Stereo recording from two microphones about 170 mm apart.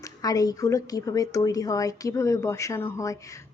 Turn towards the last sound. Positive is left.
turn(degrees=20)  # may be behind; listen again after turning